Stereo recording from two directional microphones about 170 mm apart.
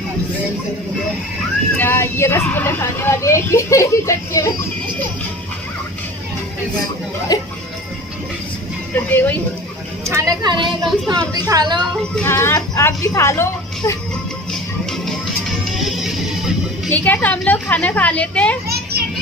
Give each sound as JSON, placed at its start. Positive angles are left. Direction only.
{"t": 1.8, "sound": "speech", "side_deg": 15}
{"t": 7.3, "sound": "speech", "side_deg": 20}
{"t": 8.9, "sound": "speech", "side_deg": 10}
{"t": 10.0, "sound": "a woman's voice", "side_deg": -20}
{"t": 12.2, "sound": "speech", "side_deg": 15}
{"t": 14.5, "sound": "music", "side_deg": 0}
{"t": 16.9, "sound": "speech", "side_deg": 10}